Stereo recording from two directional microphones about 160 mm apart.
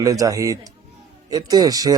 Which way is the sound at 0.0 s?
20° right (ahead or behind).